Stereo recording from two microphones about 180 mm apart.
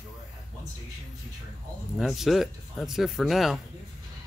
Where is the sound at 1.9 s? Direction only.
Centre (ahead or behind).